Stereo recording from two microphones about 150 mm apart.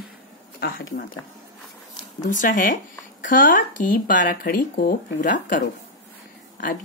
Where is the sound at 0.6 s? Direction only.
85° left.